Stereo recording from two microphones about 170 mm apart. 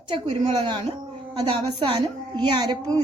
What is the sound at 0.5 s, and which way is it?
A woman's voice, 25° right (ahead or behind).